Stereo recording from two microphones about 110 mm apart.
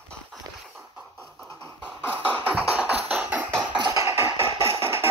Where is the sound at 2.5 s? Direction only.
10° right (ahead or behind).